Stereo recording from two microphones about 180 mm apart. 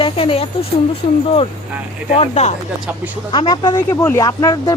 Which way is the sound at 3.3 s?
25° left (ahead or behind).